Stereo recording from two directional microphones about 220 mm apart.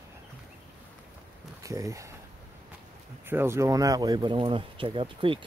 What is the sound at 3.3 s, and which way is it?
Speech, 10° right (ahead or behind).